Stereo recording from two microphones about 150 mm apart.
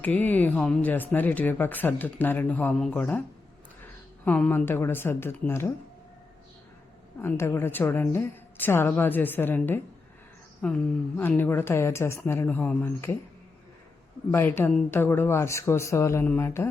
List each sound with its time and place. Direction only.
0.0 s a woman's voice: 10° left (ahead or behind)
4.3 s a woman's voice: 10° left (ahead or behind)
7.2 s a woman's voice: 15° left (ahead or behind)
14.3 s a woman's voice: 15° left (ahead or behind)